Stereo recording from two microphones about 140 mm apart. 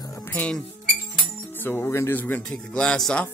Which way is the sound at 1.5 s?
15° left (ahead or behind).